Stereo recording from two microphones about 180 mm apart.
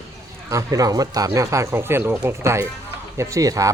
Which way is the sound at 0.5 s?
20° right (ahead or behind).